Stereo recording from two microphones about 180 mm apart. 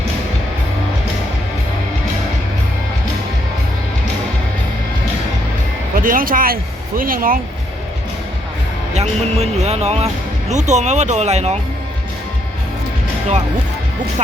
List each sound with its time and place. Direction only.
5.9 s speech: 50° right (ahead or behind)
8.9 s speech: 35° right (ahead or behind)